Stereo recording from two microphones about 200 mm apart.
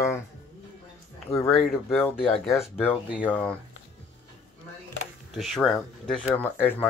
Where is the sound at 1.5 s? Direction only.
Centre (ahead or behind).